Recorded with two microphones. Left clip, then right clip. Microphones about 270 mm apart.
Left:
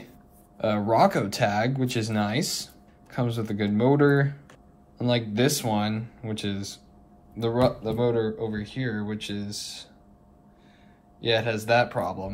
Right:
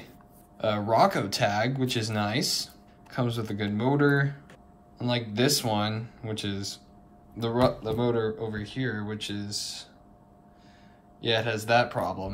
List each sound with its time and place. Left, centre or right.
0.6 s speech: centre
11.1 s speech: centre